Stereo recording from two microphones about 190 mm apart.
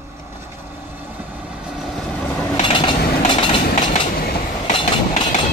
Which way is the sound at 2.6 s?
25° left (ahead or behind).